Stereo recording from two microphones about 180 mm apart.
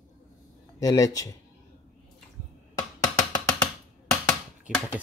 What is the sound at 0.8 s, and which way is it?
Speech, 20° left (ahead or behind).